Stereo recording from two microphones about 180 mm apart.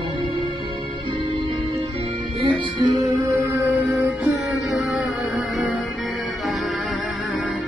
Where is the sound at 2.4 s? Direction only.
30° right (ahead or behind).